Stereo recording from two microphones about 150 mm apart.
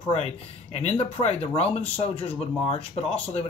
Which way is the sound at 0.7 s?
45° left (ahead or behind).